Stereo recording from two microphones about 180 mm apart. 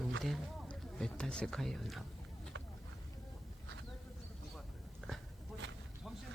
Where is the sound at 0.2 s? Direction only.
Centre (ahead or behind).